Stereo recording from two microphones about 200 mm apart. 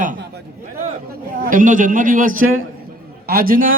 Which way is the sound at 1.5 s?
40° right (ahead or behind).